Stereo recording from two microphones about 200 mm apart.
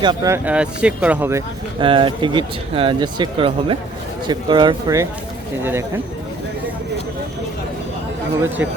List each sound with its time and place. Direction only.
0.0 s speech: 20° right (ahead or behind)
1.8 s speech: 25° right (ahead or behind)